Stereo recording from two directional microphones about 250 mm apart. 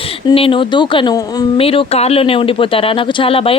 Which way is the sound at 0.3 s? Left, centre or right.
Left.